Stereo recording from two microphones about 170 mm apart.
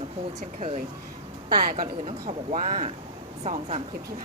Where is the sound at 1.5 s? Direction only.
60° right (ahead or behind).